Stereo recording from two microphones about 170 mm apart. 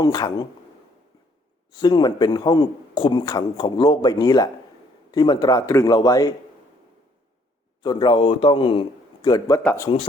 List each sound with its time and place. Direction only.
0.0 s speech: 25° left (ahead or behind)
1.7 s speech: 25° left (ahead or behind)
7.8 s speech: 25° left (ahead or behind)